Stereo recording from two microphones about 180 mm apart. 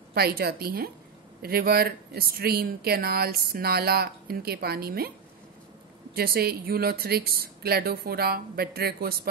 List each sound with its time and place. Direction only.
0.1 s speech: 60° right (ahead or behind)
6.1 s speech: 55° right (ahead or behind)